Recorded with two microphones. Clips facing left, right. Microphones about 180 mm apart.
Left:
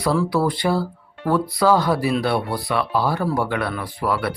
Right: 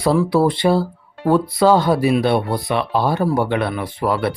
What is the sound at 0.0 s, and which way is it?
Speech, 25° right (ahead or behind).